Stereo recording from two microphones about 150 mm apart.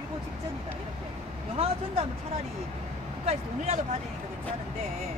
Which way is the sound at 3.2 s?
45° right (ahead or behind).